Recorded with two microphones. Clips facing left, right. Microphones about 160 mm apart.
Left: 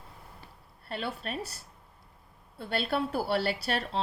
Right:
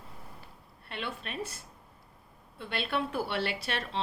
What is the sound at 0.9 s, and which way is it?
A woman's voice, 40° left (ahead or behind).